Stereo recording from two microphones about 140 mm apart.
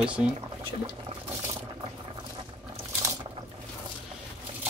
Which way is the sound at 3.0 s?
25° right (ahead or behind).